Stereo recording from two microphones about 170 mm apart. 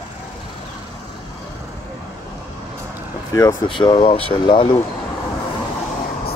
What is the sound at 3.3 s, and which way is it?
Speech, 20° left (ahead or behind).